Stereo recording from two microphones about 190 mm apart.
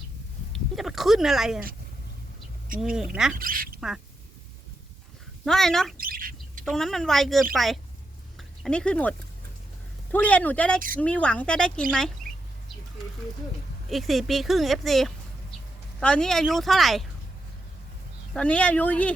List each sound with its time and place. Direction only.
0.8 s speech: centre (ahead or behind)
2.8 s speech: 5° right (ahead or behind)
3.3 s speech: 50° right (ahead or behind)
3.8 s speech: 5° right (ahead or behind)
5.5 s speech: centre (ahead or behind)
6.0 s bird: 50° right (ahead or behind)
6.7 s speech: centre (ahead or behind)
10.8 s speech: 45° right (ahead or behind)
11.0 s speech: 5° left (ahead or behind)
13.9 s speech: centre (ahead or behind)
18.3 s speech: 5° left (ahead or behind)